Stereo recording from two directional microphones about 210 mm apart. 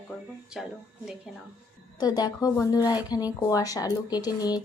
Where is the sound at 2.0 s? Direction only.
20° left (ahead or behind).